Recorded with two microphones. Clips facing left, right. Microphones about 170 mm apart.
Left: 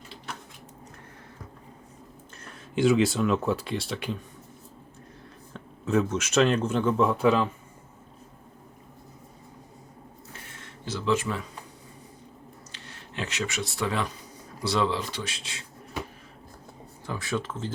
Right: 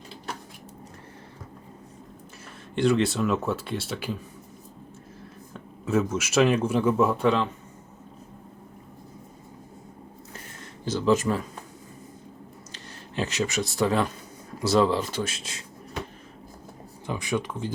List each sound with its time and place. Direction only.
2.4 s speech: centre (ahead or behind)
5.5 s speech: 5° right (ahead or behind)
10.3 s a sound: 40° right (ahead or behind)
12.7 s speech: 40° right (ahead or behind)
17.1 s speech: 15° right (ahead or behind)